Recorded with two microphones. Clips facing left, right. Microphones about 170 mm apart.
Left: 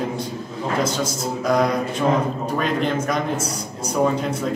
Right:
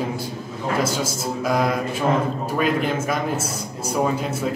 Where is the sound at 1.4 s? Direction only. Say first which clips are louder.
Left 2 dB; 5° right (ahead or behind).